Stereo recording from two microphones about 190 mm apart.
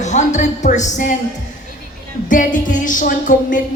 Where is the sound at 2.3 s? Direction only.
45° left (ahead or behind).